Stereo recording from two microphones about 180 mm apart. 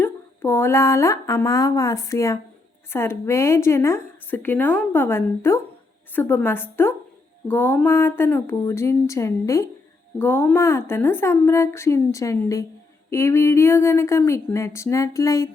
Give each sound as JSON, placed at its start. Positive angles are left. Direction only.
{"t": 0.0, "sound": "a woman's voice", "side_deg": 10}